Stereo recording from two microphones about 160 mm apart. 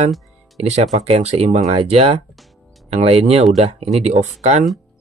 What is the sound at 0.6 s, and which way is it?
Speech, 45° right (ahead or behind).